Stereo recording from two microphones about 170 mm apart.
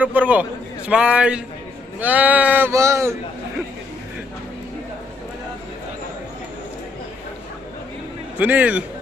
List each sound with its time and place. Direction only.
0.0 s a man's voice: 10° right (ahead or behind)
8.4 s speech: 10° right (ahead or behind)